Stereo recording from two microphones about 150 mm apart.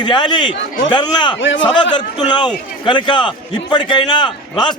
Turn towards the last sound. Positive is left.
turn(degrees=30)  # may be behind; listen again after turning